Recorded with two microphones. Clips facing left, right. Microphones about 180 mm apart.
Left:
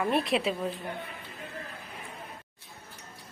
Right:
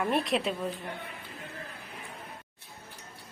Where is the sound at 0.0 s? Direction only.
Centre (ahead or behind).